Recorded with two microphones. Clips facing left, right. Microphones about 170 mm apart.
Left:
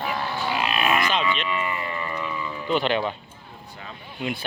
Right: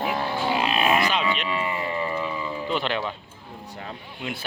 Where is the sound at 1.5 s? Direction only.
25° right (ahead or behind).